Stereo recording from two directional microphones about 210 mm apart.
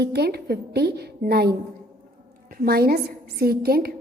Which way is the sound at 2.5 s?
45° right (ahead or behind).